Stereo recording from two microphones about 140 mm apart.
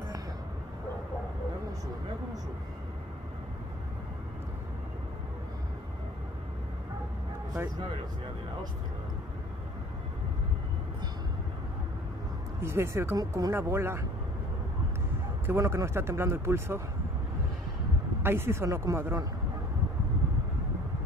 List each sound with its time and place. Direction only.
12.6 s speech: 20° right (ahead or behind)
15.4 s speech: 20° right (ahead or behind)
18.2 s speech: 15° right (ahead or behind)